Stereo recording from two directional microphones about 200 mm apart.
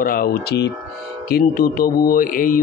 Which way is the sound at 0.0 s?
45° left (ahead or behind).